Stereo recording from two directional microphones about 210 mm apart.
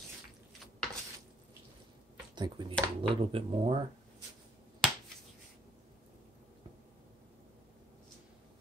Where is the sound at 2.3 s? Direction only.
20° right (ahead or behind).